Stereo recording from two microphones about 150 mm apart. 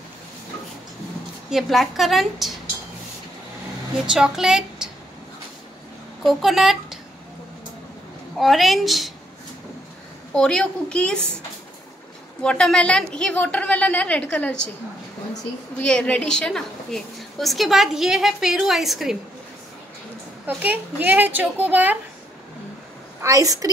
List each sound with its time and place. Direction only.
1.5 s a woman's voice: centre (ahead or behind)
4.0 s a woman's voice: 5° right (ahead or behind)
6.2 s speech: centre (ahead or behind)
8.4 s a woman's voice: centre (ahead or behind)
10.3 s a woman's voice: 5° left (ahead or behind)
12.4 s a woman's voice: 5° left (ahead or behind)
15.8 s a woman's voice: 5° left (ahead or behind)
20.4 s a woman's voice: 10° right (ahead or behind)
23.2 s a woman's voice: 20° right (ahead or behind)